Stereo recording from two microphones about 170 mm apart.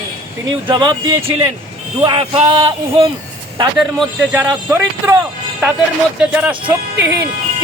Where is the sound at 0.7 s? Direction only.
25° right (ahead or behind).